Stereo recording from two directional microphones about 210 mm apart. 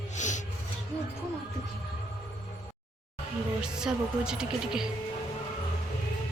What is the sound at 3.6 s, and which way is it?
Speech, 5° right (ahead or behind).